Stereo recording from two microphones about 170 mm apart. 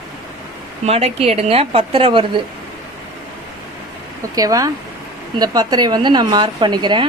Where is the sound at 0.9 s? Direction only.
35° right (ahead or behind).